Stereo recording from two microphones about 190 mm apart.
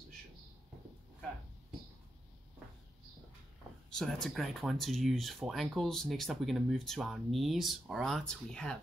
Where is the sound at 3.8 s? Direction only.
Centre (ahead or behind).